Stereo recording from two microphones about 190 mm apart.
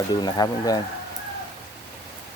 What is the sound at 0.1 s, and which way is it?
Speech, 20° left (ahead or behind).